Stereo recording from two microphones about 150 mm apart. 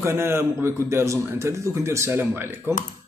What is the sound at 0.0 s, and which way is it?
A man's voice, 15° right (ahead or behind).